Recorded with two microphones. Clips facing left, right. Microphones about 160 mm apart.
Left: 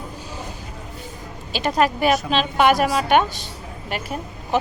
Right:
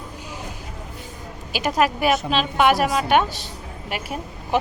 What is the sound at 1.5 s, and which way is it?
A woman's voice, 10° right (ahead or behind).